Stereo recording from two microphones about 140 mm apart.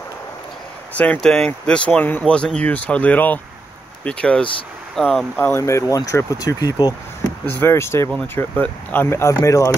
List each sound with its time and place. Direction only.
0.9 s speech: 10° left (ahead or behind)
5.4 s speech: 15° left (ahead or behind)
7.4 s speech: 15° left (ahead or behind)